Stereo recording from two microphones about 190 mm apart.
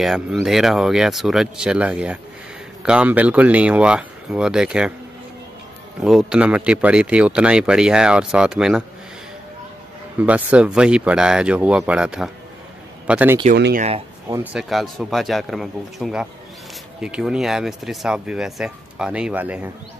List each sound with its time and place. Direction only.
0.0 s speech: centre (ahead or behind)
5.9 s speech: centre (ahead or behind)
10.1 s speech: 5° right (ahead or behind)
13.7 s speech: 35° right (ahead or behind)
14.3 s speech: 5° right (ahead or behind)